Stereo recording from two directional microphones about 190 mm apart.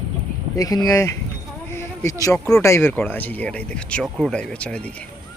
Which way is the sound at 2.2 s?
15° left (ahead or behind).